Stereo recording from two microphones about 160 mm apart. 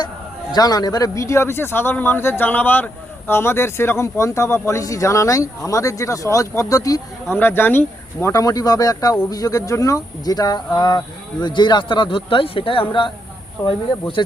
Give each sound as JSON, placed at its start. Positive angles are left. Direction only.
{"t": 0.5, "sound": "speech", "side_deg": 25}
{"t": 14.2, "sound": "speech", "side_deg": 25}